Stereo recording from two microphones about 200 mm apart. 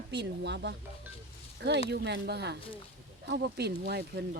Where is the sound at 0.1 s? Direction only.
60° right (ahead or behind).